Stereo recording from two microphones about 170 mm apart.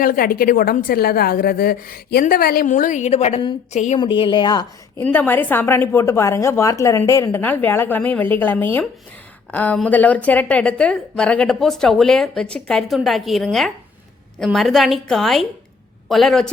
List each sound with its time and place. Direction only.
0.0 s a woman's voice: 55° left (ahead or behind); by 3.9 s 40° left (ahead or behind)
3.9 s speech: 30° left (ahead or behind)
5.0 s a woman's voice: 10° left (ahead or behind)